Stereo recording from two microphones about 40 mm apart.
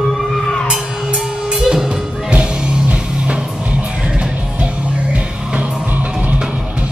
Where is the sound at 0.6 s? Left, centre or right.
Centre.